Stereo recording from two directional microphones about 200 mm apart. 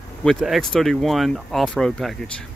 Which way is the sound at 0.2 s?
Centre (ahead or behind).